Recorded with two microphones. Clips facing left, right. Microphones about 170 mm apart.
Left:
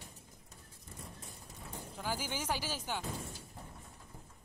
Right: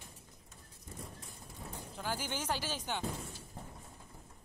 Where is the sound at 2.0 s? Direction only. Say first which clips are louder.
Even; 10° left (ahead or behind).